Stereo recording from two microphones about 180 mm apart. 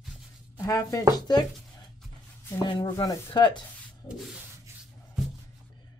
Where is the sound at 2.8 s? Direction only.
20° left (ahead or behind).